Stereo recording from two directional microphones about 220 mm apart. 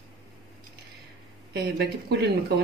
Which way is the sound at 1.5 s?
50° right (ahead or behind).